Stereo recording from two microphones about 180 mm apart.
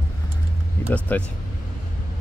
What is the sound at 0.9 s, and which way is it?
Speech, 10° left (ahead or behind).